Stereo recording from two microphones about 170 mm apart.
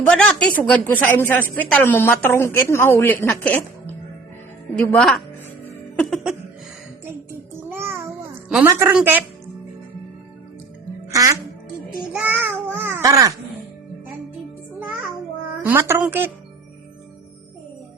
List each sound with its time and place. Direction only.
0.1 s a woman's voice: 5° left (ahead or behind)
7.0 s music: 15° right (ahead or behind)
8.6 s a woman's voice: 15° right (ahead or behind)
11.1 s music: 20° right (ahead or behind)
12.1 s babbling: 10° right (ahead or behind)
15.6 s a woman's voice: 15° right (ahead or behind)